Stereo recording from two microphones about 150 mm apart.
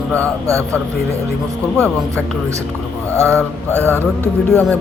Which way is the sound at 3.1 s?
20° right (ahead or behind).